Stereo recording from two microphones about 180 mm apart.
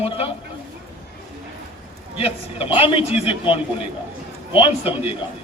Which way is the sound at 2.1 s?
30° left (ahead or behind).